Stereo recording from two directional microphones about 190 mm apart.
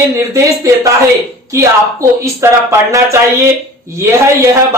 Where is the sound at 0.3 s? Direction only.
15° right (ahead or behind).